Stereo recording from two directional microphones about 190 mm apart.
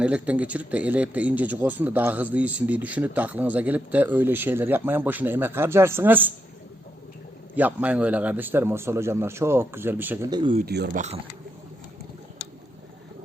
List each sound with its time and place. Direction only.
0.0 s a man's voice: 5° right (ahead or behind)
7.5 s a man's voice: 10° right (ahead or behind)
10.2 s speech: 25° right (ahead or behind)
10.7 s speech: 60° right (ahead or behind)
10.9 s speech: 35° right (ahead or behind)